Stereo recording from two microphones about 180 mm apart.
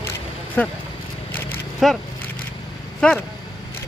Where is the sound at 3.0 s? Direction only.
5° left (ahead or behind).